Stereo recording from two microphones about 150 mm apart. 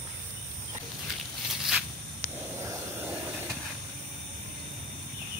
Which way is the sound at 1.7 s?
5° right (ahead or behind).